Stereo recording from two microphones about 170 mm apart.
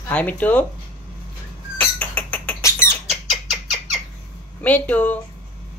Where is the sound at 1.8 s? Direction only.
10° left (ahead or behind).